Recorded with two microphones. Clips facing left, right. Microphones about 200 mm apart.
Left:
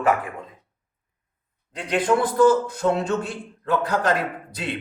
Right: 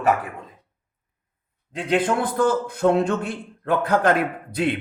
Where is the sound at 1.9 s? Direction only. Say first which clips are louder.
Left 2 dB; 55° right (ahead or behind).